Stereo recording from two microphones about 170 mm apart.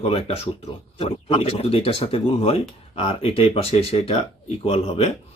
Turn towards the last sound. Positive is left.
turn(degrees=35)  # may be behind; listen again after turning